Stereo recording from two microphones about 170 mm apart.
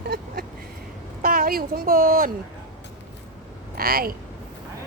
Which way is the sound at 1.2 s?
55° right (ahead or behind).